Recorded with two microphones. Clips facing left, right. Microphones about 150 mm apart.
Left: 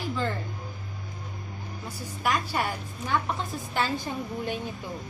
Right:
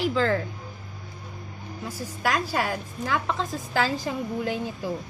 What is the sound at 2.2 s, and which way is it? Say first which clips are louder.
A woman's voice: right 2 dB; 90° right.